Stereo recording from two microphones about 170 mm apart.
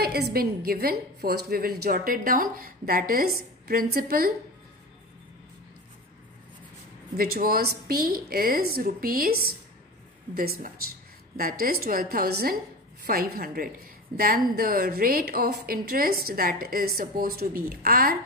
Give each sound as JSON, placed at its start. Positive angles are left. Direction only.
{"t": 0.0, "sound": "a woman's voice", "side_deg": -70}
{"t": 7.2, "sound": "a woman's voice", "side_deg": -60}